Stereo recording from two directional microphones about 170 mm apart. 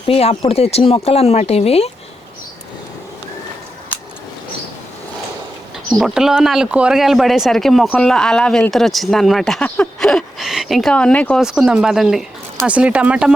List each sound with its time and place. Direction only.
0.1 s speech: 35° left (ahead or behind)
5.9 s speech: centre (ahead or behind)
11.4 s speech: 5° right (ahead or behind)